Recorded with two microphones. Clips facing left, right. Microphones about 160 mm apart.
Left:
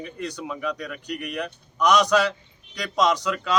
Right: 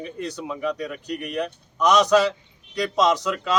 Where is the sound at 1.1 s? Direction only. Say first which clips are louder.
Right 3 dB; 30° right (ahead or behind).